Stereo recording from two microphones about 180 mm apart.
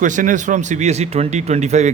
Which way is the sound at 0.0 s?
45° right (ahead or behind).